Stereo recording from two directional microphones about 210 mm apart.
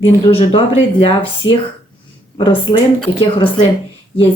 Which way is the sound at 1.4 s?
60° left (ahead or behind).